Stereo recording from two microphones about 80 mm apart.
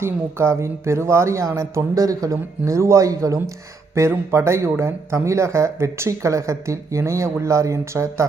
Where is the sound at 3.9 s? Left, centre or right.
Right.